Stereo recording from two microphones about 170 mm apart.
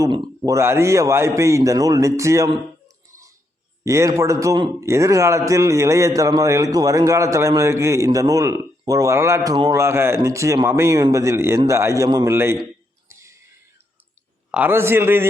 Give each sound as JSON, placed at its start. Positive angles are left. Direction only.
{"t": 0.0, "sound": "a man's voice", "side_deg": -25}
{"t": 13.1, "sound": "a sound", "side_deg": -15}
{"t": 14.5, "sound": "a man's voice", "side_deg": -10}